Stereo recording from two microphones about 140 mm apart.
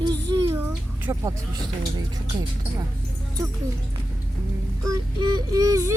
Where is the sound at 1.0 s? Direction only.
20° right (ahead or behind).